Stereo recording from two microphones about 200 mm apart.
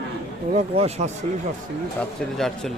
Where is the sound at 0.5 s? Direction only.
30° right (ahead or behind).